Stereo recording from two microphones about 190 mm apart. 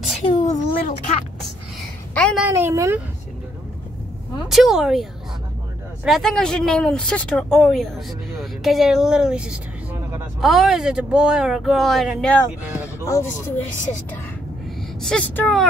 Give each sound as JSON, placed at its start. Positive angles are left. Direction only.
{"t": 0.4, "sound": "a child's voice", "side_deg": 40}
{"t": 2.1, "sound": "a woman's voice", "side_deg": 5}
{"t": 2.4, "sound": "a woman's voice", "side_deg": -10}
{"t": 4.5, "sound": "speech", "side_deg": 0}
{"t": 6.0, "sound": "speech", "side_deg": 0}
{"t": 15.0, "sound": "speech", "side_deg": 5}